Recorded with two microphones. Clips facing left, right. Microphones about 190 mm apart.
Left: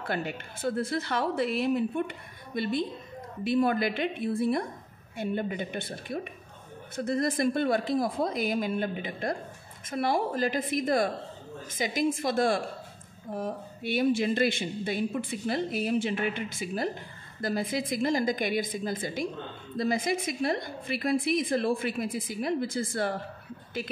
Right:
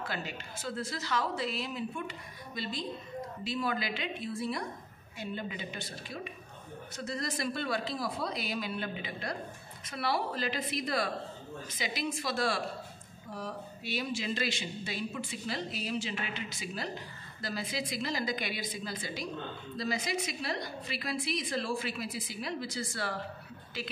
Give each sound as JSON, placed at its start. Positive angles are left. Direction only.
{"t": 0.0, "sound": "a woman's voice", "side_deg": 55}